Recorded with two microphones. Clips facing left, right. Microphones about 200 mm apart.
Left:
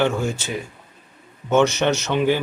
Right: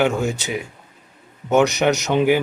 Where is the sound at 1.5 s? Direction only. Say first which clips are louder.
Right 1 dB; 15° right (ahead or behind).